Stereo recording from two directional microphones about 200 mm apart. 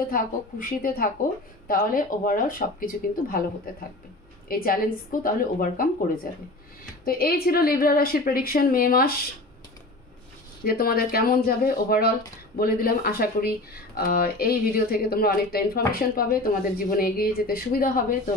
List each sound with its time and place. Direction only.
0.1 s speech: 45° left (ahead or behind)
4.5 s speech: 45° left (ahead or behind)
7.1 s speech: 50° left (ahead or behind)
10.6 s speech: 50° left (ahead or behind)